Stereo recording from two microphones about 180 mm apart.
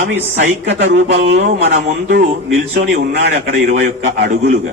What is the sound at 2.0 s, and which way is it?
A man's voice, 70° right (ahead or behind).